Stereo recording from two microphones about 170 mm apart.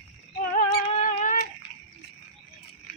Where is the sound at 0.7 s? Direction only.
50° left (ahead or behind).